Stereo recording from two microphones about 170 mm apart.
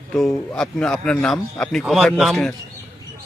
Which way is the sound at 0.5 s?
5° left (ahead or behind).